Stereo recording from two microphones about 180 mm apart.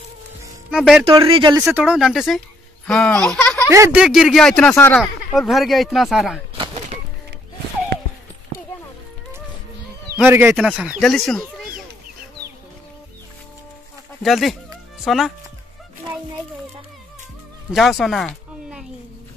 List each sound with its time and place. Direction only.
0.7 s speech: centre (ahead or behind)
1.0 s speech: 30° right (ahead or behind)
1.6 s speech: 5° right (ahead or behind)
3.7 s speech: 15° right (ahead or behind)
4.0 s speech: 5° right (ahead or behind)
10.1 s speech: 10° right (ahead or behind)
14.2 s speech: centre (ahead or behind)
17.7 s a sound: centre (ahead or behind)